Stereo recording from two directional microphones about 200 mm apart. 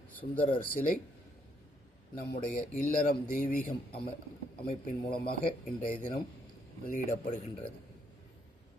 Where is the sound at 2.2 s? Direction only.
40° left (ahead or behind).